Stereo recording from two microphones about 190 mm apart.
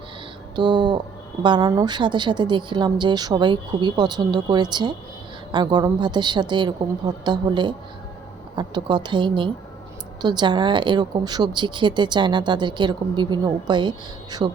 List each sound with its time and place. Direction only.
0.5 s speech: 25° right (ahead or behind)